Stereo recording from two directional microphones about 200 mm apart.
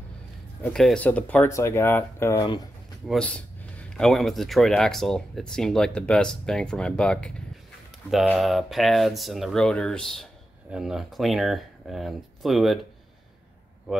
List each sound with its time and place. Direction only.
0.6 s speech: 5° left (ahead or behind)
2.3 s speech: 20° left (ahead or behind)
3.1 s speech: 5° left (ahead or behind)